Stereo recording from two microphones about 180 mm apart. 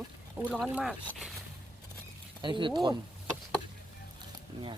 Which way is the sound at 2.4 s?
25° right (ahead or behind).